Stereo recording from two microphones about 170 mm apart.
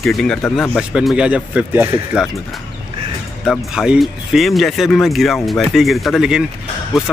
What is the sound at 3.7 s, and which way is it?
Speech, 5° right (ahead or behind).